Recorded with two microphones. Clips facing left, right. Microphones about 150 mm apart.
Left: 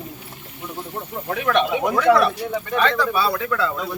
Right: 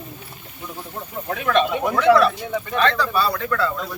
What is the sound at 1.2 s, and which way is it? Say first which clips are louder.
Speech: even; 5° left (ahead or behind).